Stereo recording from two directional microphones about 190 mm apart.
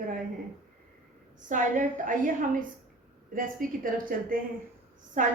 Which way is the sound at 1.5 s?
45° right (ahead or behind).